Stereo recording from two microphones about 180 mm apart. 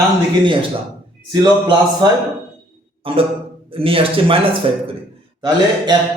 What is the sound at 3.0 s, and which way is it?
Speech, 30° right (ahead or behind).